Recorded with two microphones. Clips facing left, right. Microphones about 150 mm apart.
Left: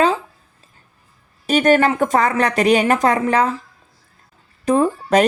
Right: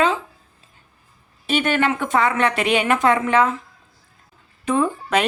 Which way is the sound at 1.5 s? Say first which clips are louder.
Left 5 dB; 40° left (ahead or behind).